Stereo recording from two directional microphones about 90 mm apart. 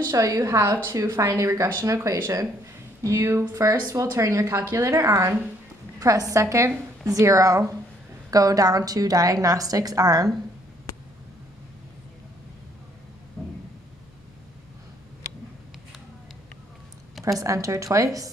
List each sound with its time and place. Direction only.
0.0 s speech: 40° right (ahead or behind)
13.4 s a sound: 5° right (ahead or behind)
17.2 s speech: 40° right (ahead or behind)